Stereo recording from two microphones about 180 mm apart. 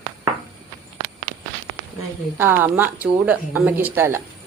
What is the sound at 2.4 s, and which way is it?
A woman's voice, 15° right (ahead or behind).